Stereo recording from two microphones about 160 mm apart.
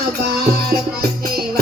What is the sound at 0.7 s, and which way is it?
Music, 70° right (ahead or behind).